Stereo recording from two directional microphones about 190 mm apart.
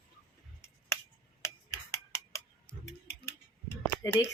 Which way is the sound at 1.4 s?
15° left (ahead or behind).